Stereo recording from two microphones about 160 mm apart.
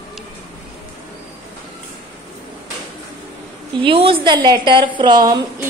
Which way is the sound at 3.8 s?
35° right (ahead or behind).